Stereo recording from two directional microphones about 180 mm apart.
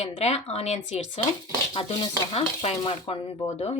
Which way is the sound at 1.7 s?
30° left (ahead or behind).